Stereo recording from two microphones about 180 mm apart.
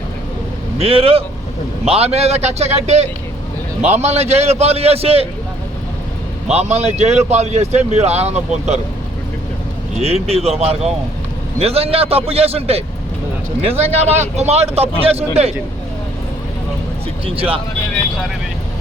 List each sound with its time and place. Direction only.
0.8 s a man's voice: 30° right (ahead or behind)
6.5 s a man's voice: 35° right (ahead or behind)
10.0 s a man's voice: 35° right (ahead or behind)